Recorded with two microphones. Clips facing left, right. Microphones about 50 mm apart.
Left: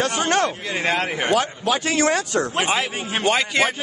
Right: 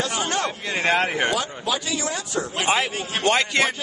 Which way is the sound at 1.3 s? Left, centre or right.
Left.